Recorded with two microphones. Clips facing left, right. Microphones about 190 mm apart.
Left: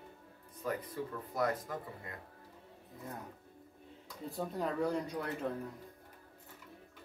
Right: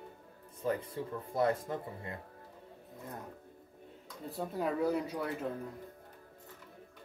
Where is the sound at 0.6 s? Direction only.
25° right (ahead or behind).